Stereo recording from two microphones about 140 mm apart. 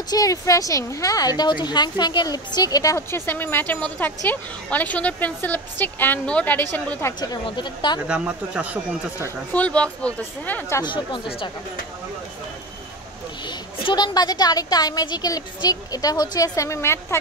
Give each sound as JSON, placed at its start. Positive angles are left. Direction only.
{"t": 0.1, "sound": "a woman's voice", "side_deg": 25}
{"t": 7.2, "sound": "speech", "side_deg": 30}
{"t": 8.1, "sound": "speech", "side_deg": -10}
{"t": 9.5, "sound": "a woman's voice", "side_deg": 10}
{"t": 10.8, "sound": "speech", "side_deg": 35}
{"t": 13.5, "sound": "speech", "side_deg": 30}